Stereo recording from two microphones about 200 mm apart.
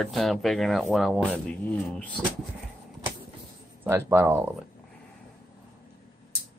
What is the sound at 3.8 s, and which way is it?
Speech, 10° right (ahead or behind).